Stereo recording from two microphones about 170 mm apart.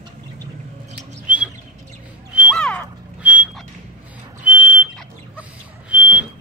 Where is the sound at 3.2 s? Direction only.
5° right (ahead or behind).